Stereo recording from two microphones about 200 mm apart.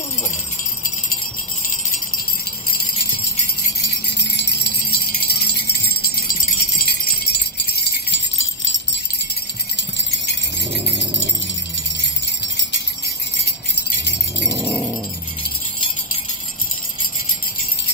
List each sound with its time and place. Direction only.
3.8 s wind chime: 60° left (ahead or behind)
7.7 s jingle bell: 65° left (ahead or behind)
14.6 s wind chime: 5° left (ahead or behind)